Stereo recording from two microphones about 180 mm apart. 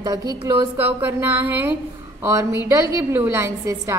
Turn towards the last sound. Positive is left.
turn(degrees=-15)  # may be behind; listen again after turning